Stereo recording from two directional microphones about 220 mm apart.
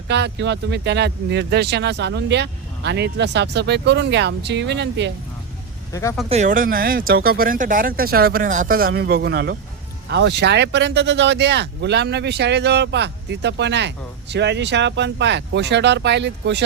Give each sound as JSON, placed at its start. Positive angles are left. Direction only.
{"t": 0.1, "sound": "speech", "side_deg": -50}
{"t": 5.9, "sound": "speech", "side_deg": 15}
{"t": 6.2, "sound": "speech", "side_deg": -30}